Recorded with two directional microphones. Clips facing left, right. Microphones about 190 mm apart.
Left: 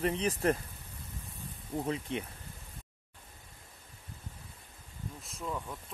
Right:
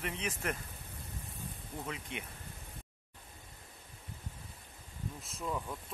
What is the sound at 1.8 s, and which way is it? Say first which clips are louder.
Speech: left 8 dB; 35° left (ahead or behind).